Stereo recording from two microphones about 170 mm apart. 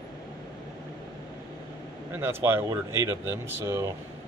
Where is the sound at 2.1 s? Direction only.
15° right (ahead or behind).